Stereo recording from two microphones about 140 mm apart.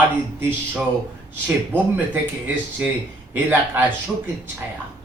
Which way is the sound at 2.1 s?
15° right (ahead or behind).